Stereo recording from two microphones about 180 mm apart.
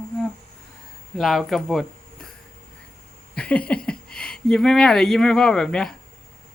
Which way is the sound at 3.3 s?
5° left (ahead or behind).